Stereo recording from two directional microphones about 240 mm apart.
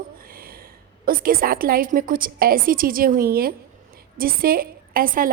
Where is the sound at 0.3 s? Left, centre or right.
Right.